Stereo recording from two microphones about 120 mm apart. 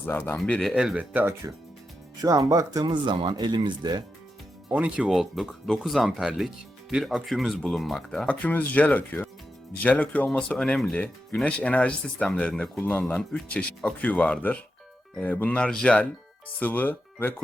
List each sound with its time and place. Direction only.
0.0 s speech: 20° left (ahead or behind)
0.3 s speech: 5° left (ahead or behind)
0.8 s speech: 5° right (ahead or behind)
1.1 s speech: 20° right (ahead or behind)
2.8 s speech: 40° right (ahead or behind)
4.7 s speech: 10° right (ahead or behind); by 17.3 s 15° left (ahead or behind)